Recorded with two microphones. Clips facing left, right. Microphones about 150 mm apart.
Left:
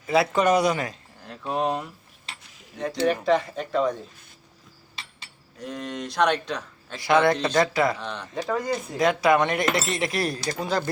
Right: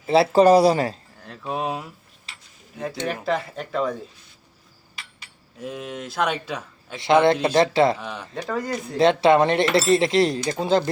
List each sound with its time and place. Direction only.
0.1 s speech: 30° right (ahead or behind)
1.2 s a man's voice: centre (ahead or behind)
5.5 s a man's voice: 5° right (ahead or behind)
7.0 s speech: 25° right (ahead or behind)
8.0 s a man's voice: 10° right (ahead or behind)
9.0 s speech: 25° right (ahead or behind)